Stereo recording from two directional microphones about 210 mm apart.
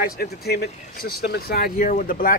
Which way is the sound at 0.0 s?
50° left (ahead or behind).